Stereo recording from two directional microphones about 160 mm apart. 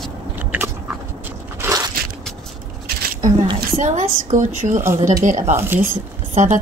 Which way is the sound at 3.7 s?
50° right (ahead or behind).